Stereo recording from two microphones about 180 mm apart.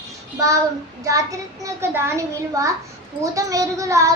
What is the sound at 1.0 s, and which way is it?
A child's voice, 20° right (ahead or behind).